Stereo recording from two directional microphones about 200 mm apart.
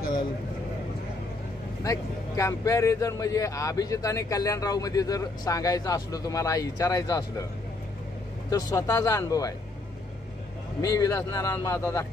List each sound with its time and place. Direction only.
1.8 s speech: 15° left (ahead or behind)
8.5 s speech: 15° left (ahead or behind)
10.8 s speech: 20° left (ahead or behind)